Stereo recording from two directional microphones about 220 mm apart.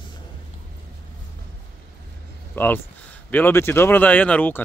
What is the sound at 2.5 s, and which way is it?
Speech, 10° left (ahead or behind).